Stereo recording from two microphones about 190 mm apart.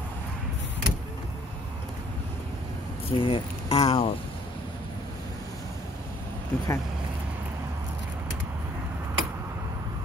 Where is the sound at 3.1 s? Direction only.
25° left (ahead or behind).